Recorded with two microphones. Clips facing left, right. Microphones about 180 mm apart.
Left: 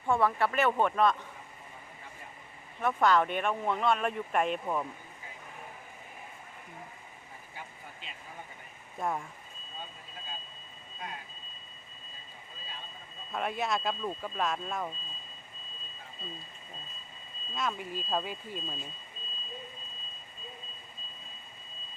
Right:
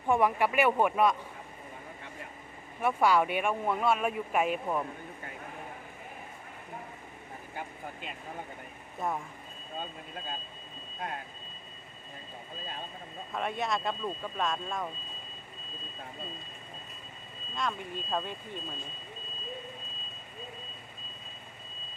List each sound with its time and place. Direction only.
0.1 s speech: 15° right (ahead or behind)
2.8 s speech: 10° right (ahead or behind)
8.0 s speech: 55° right (ahead or behind)
9.0 s speech: centre (ahead or behind)
11.0 s speech: 55° right (ahead or behind)
13.3 s speech: centre (ahead or behind)
17.5 s speech: 5° left (ahead or behind)